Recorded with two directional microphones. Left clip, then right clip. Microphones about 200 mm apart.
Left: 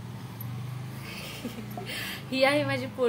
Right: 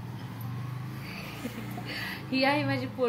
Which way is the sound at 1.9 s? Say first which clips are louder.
Even; 45° left (ahead or behind).